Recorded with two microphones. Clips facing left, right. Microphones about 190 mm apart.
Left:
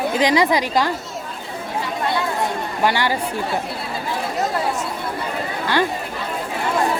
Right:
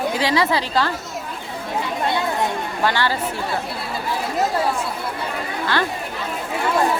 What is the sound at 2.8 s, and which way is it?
Speech, 15° left (ahead or behind).